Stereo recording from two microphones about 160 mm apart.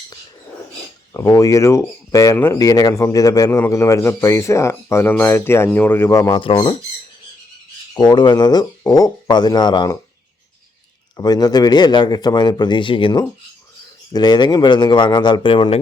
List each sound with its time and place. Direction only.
1.3 s speech: 20° left (ahead or behind)
6.4 s speech: 30° left (ahead or behind)
7.9 s speech: 25° left (ahead or behind)
11.2 s speech: 25° left (ahead or behind)